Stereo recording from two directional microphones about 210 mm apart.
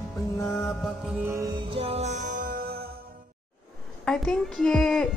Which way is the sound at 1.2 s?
15° right (ahead or behind).